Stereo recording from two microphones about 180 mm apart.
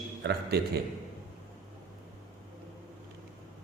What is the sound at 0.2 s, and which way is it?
Speech, 65° right (ahead or behind).